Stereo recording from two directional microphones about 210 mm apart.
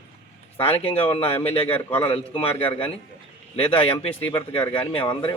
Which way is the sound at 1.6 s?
10° left (ahead or behind).